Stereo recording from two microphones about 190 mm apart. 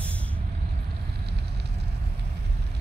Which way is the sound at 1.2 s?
60° right (ahead or behind).